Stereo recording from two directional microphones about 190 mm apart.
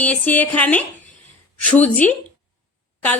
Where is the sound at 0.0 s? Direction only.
10° left (ahead or behind).